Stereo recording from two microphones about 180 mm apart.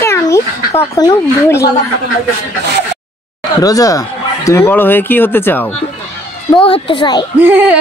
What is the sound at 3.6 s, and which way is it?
Speech, 20° left (ahead or behind).